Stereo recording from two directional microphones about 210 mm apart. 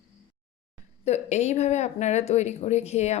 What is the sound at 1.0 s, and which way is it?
Speech, 30° left (ahead or behind).